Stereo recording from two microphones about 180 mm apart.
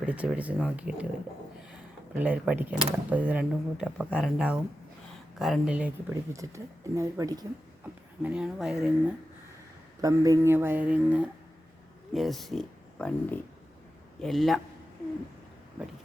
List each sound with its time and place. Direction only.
0.0 s speech: 5° right (ahead or behind)
8.2 s speech: 5° right (ahead or behind)
10.0 s speech: 20° right (ahead or behind); by 14.6 s centre (ahead or behind)